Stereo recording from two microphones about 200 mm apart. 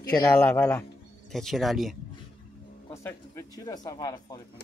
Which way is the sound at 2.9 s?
15° left (ahead or behind).